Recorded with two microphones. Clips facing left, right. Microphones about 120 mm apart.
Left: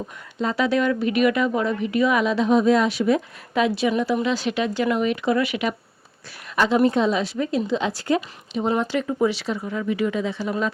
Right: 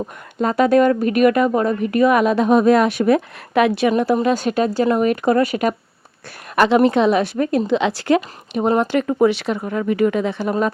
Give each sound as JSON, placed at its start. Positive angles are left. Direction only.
{"t": 0.3, "sound": "a woman's voice", "side_deg": -50}
{"t": 6.6, "sound": "speech", "side_deg": -70}
{"t": 7.8, "sound": "speech", "side_deg": -80}